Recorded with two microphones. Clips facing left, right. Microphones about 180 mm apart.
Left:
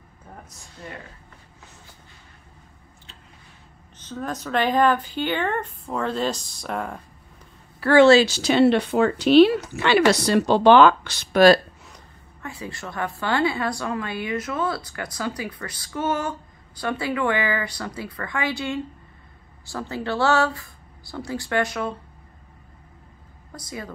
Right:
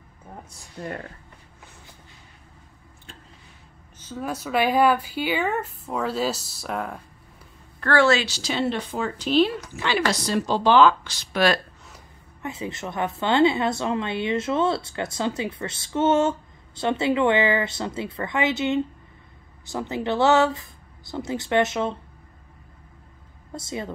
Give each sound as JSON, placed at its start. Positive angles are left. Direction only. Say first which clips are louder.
{"t": 0.8, "sound": "speech", "louder": "right 6 dB", "side_deg": -40}
{"t": 4.0, "sound": "speech", "louder": "even", "side_deg": -10}
{"t": 8.0, "sound": "speech", "louder": "left 7 dB", "side_deg": 30}
{"t": 8.3, "sound": "speech", "louder": "left 8 dB", "side_deg": 60}
{"t": 12.4, "sound": "a woman's voice", "louder": "right 3 dB", "side_deg": -20}
{"t": 23.5, "sound": "a woman's voice", "louder": "right 4 dB", "side_deg": -25}